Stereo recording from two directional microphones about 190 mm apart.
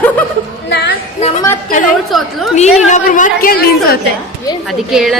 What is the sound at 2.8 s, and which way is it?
A woman's voice, 40° left (ahead or behind).